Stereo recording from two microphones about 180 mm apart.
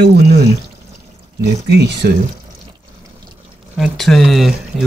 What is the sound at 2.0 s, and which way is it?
Speech, 60° right (ahead or behind).